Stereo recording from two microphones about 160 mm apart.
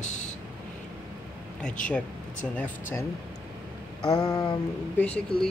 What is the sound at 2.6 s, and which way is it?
Speech, 15° left (ahead or behind).